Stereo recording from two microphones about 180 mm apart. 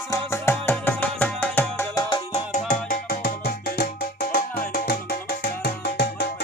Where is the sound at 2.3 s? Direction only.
45° left (ahead or behind).